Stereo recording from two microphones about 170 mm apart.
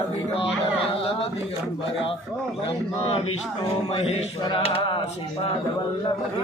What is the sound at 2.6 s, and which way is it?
A man's voice, 35° left (ahead or behind).